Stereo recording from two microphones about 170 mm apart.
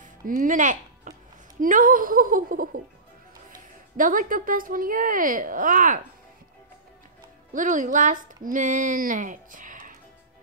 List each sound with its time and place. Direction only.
0.0 s music: 50° right (ahead or behind)
1.6 s a woman's voice: 55° right (ahead or behind)
7.5 s speech: 50° right (ahead or behind)